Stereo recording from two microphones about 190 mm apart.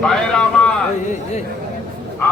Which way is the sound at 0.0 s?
5° left (ahead or behind).